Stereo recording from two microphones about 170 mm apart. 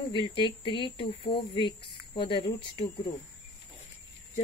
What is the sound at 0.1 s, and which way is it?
Speech, 30° left (ahead or behind).